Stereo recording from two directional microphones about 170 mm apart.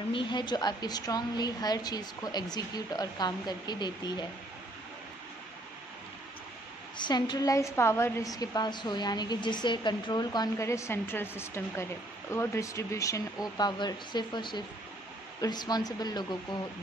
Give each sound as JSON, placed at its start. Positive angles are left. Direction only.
{"t": 0.1, "sound": "a woman's voice", "side_deg": 25}
{"t": 7.0, "sound": "a woman's voice", "side_deg": 25}